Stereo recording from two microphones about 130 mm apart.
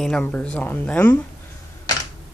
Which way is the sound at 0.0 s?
10° left (ahead or behind).